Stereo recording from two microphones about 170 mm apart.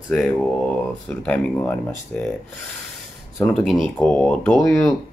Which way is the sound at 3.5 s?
5° left (ahead or behind).